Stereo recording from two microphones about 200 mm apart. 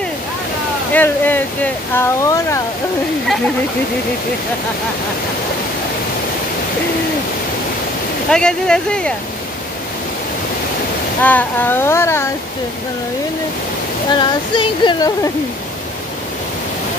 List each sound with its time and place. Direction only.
0.9 s speech: 10° left (ahead or behind)
8.3 s speech: 5° left (ahead or behind)
11.2 s speech: 10° left (ahead or behind)
14.1 s speech: 25° left (ahead or behind)